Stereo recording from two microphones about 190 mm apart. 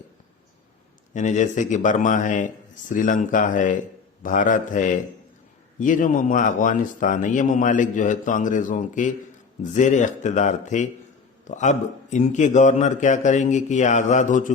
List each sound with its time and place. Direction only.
1.1 s a man's voice: 40° left (ahead or behind)